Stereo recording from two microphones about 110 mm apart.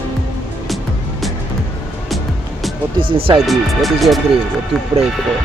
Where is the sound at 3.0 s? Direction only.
55° right (ahead or behind).